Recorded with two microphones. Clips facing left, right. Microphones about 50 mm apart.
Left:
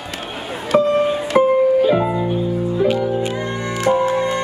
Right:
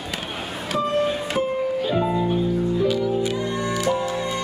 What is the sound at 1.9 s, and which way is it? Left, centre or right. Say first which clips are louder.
Music: left 4 dB; left.